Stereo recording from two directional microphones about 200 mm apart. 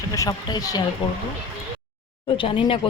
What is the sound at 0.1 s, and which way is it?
Speech, 20° left (ahead or behind).